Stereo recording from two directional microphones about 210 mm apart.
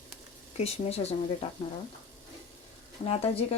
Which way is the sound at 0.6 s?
30° left (ahead or behind).